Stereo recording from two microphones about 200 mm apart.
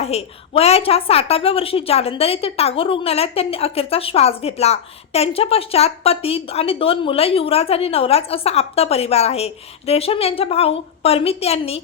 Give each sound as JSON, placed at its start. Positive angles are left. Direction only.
{"t": 0.0, "sound": "a woman's voice", "side_deg": 30}